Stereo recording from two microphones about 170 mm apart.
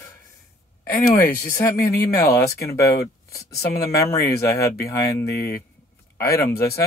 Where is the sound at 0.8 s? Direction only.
60° left (ahead or behind).